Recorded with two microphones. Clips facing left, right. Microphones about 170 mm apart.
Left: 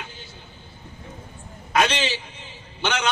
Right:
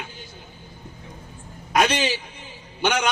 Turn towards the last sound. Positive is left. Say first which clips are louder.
# right 2 dB
turn(degrees=-10)  # may be behind; listen again after turning